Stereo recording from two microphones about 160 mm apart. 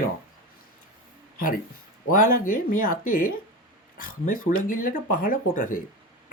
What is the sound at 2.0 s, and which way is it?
Speech, 55° left (ahead or behind).